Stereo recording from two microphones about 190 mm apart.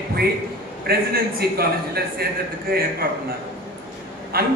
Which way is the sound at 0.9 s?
55° right (ahead or behind).